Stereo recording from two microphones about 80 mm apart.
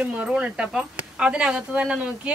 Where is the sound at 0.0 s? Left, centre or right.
Centre.